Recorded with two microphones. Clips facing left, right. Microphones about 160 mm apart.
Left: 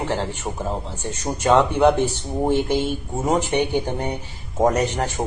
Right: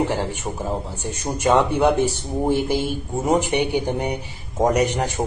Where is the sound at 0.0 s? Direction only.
15° right (ahead or behind).